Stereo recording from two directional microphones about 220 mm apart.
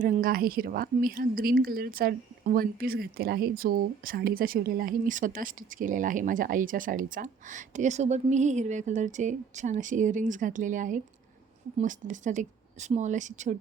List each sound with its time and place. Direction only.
0.0 s a woman's voice: 40° right (ahead or behind)